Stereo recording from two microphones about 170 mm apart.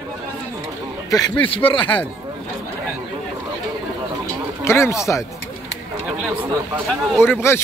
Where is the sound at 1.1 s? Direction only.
20° left (ahead or behind).